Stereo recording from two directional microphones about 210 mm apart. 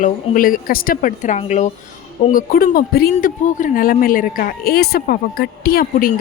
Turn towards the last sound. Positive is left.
turn(degrees=45)  # may be behind; listen again after turning